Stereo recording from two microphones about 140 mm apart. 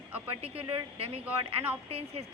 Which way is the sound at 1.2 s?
15° right (ahead or behind).